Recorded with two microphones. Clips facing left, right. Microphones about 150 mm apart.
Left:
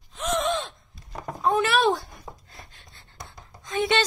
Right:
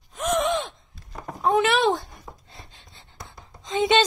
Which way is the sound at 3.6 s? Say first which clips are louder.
Right 4 dB; 20° right (ahead or behind).